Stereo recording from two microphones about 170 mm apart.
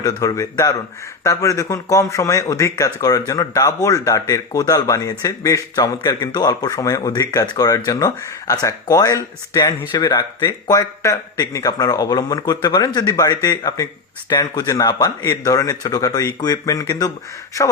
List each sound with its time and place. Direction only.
0.0 s speech: 20° left (ahead or behind)